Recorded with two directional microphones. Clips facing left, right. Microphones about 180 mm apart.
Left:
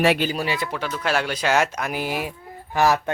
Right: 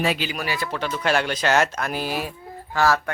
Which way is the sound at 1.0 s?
5° left (ahead or behind).